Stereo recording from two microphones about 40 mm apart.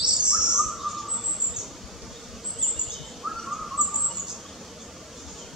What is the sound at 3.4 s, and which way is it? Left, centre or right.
Bird, centre.